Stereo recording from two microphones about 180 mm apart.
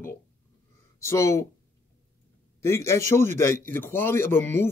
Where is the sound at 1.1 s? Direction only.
15° left (ahead or behind).